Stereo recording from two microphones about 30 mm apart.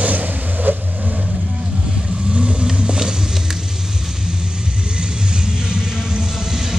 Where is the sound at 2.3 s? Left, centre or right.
Right.